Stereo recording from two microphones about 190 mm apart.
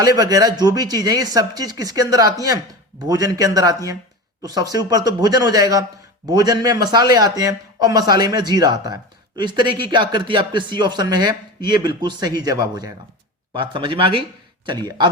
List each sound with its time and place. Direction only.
0.0 s a man's voice: 20° right (ahead or behind)